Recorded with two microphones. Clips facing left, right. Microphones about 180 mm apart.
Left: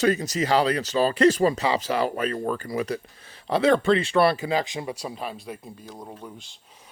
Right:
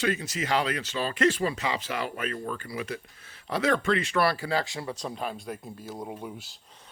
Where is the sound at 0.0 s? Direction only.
40° left (ahead or behind).